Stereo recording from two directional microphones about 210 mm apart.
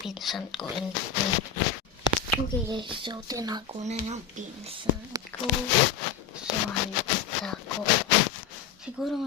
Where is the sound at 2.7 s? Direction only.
20° right (ahead or behind).